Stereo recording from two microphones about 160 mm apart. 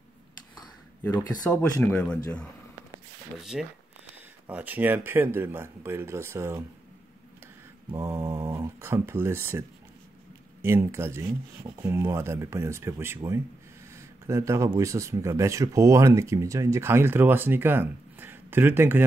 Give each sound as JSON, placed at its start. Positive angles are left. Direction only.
{"t": 1.8, "sound": "speech", "side_deg": 10}
{"t": 3.5, "sound": "speech", "side_deg": -5}
{"t": 7.9, "sound": "speech", "side_deg": -15}
{"t": 13.9, "sound": "a sound", "side_deg": -20}
{"t": 14.8, "sound": "speech", "side_deg": -20}